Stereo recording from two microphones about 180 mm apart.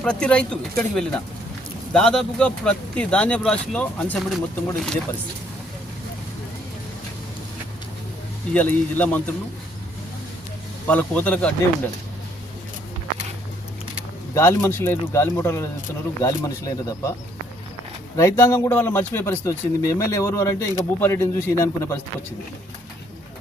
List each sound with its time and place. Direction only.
0.0 s speech: 5° left (ahead or behind)
8.5 s speech: 10° left (ahead or behind)
10.8 s speech: 5° left (ahead or behind)
14.3 s speech: 15° left (ahead or behind)
18.2 s speech: 15° left (ahead or behind)